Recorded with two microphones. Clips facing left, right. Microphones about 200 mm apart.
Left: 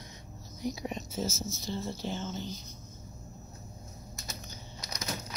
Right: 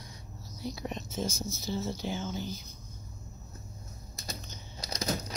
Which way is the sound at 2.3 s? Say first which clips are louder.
Right 2 dB; 20° left (ahead or behind).